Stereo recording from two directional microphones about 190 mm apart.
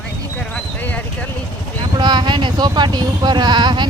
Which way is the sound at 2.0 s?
25° right (ahead or behind).